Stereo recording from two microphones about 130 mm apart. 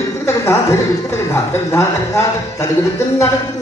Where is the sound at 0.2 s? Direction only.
20° left (ahead or behind).